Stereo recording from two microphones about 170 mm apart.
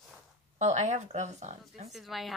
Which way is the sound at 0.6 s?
45° right (ahead or behind).